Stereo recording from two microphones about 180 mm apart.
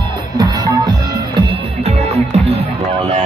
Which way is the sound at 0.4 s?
25° right (ahead or behind).